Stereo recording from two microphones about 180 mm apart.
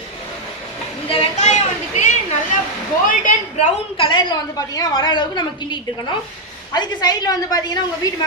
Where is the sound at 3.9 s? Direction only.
25° left (ahead or behind).